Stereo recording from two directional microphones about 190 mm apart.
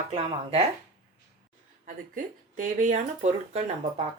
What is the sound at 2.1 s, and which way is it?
Speech, 40° right (ahead or behind).